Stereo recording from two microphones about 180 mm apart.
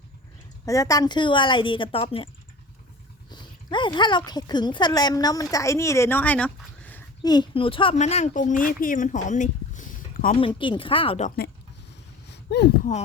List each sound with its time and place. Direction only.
0.6 s speech: 20° left (ahead or behind)
7.2 s speech: 25° left (ahead or behind); by 10.3 s 45° left (ahead or behind)
10.3 s speech: 30° left (ahead or behind)
12.3 s a sound: 70° left (ahead or behind)